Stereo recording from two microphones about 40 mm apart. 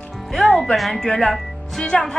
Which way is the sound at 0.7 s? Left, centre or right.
Centre.